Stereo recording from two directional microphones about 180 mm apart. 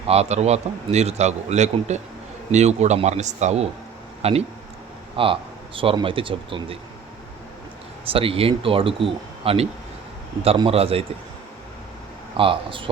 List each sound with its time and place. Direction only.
0.1 s a man's voice: 35° right (ahead or behind)
8.0 s a man's voice: 30° right (ahead or behind)
12.4 s speech: 30° right (ahead or behind)